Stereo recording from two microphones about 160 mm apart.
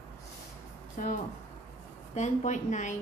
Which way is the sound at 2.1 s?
45° left (ahead or behind).